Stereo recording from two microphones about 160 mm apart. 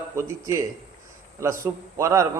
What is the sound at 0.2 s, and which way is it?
A man's voice, 15° right (ahead or behind).